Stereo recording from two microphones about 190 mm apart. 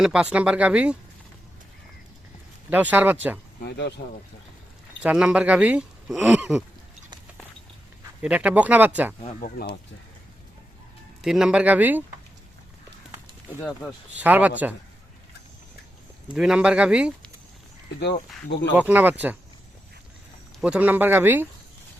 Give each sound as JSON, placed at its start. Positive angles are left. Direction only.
{"t": 0.0, "sound": "speech", "side_deg": -5}
{"t": 2.6, "sound": "speech", "side_deg": -10}
{"t": 3.6, "sound": "speech", "side_deg": 60}
{"t": 5.0, "sound": "speech", "side_deg": -5}
{"t": 8.2, "sound": "speech", "side_deg": -5}
{"t": 9.4, "sound": "speech", "side_deg": 60}
{"t": 11.2, "sound": "speech", "side_deg": -5}
{"t": 13.6, "sound": "speech", "side_deg": 10}
{"t": 14.2, "sound": "speech", "side_deg": -10}
{"t": 16.3, "sound": "speech", "side_deg": -5}
{"t": 18.0, "sound": "speech", "side_deg": 60}
{"t": 18.8, "sound": "speech", "side_deg": -10}
{"t": 20.6, "sound": "speech", "side_deg": -5}